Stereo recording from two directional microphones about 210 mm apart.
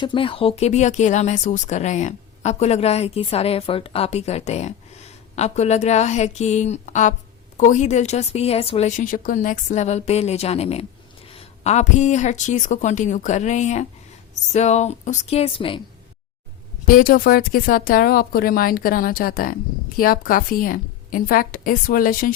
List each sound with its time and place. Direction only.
0.0 s a woman's voice: 25° left (ahead or behind)
16.8 s a woman's voice: 40° left (ahead or behind)